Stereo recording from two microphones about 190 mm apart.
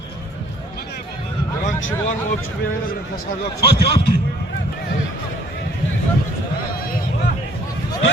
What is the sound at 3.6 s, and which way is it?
Speech, 30° left (ahead or behind).